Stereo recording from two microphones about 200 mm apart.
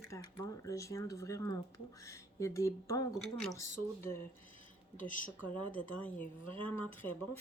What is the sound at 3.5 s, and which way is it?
Speech, 15° left (ahead or behind).